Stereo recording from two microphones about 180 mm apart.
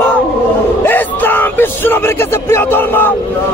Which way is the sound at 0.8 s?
10° left (ahead or behind).